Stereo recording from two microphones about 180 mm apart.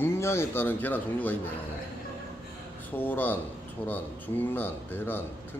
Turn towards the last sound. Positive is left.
turn(degrees=10)  # may be behind; listen again after turning